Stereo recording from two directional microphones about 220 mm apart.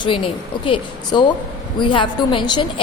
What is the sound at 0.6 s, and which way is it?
A woman's voice, 20° left (ahead or behind).